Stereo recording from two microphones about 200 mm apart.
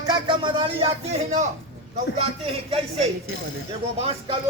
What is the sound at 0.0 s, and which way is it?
Speech, 20° right (ahead or behind).